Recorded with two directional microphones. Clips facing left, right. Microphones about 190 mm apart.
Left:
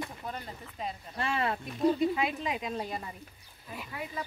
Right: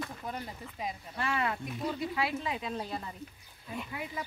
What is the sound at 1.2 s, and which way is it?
Speech, 30° left (ahead or behind).